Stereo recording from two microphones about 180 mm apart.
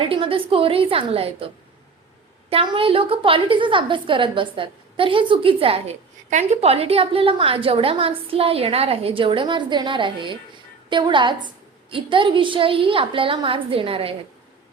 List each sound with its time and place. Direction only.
0.0 s a woman's voice: 30° right (ahead or behind)
2.5 s a woman's voice: 30° right (ahead or behind)